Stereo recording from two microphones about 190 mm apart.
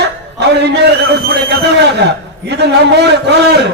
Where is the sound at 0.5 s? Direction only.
60° right (ahead or behind).